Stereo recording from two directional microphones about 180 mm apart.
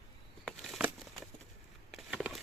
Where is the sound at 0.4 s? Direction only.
Centre (ahead or behind).